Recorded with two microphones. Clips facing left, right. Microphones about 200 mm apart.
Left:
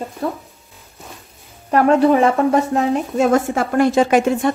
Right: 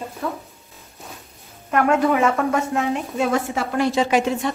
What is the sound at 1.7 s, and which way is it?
A woman's voice, 35° left (ahead or behind).